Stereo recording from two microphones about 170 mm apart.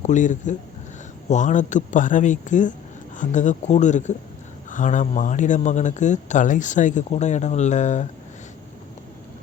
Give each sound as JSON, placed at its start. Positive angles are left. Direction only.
{"t": 0.0, "sound": "speech", "side_deg": 45}